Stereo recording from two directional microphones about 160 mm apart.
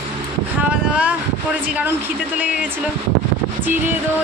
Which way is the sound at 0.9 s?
10° right (ahead or behind).